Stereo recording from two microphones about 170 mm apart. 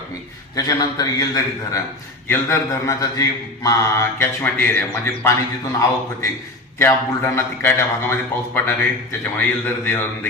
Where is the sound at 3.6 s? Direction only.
15° left (ahead or behind).